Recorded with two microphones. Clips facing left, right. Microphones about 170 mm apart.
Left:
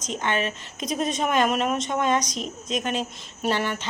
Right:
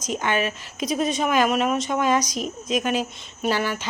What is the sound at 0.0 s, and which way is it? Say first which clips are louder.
A woman's voice: right 2 dB; 10° right (ahead or behind).